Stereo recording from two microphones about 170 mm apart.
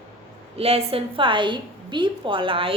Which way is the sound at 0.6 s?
35° right (ahead or behind).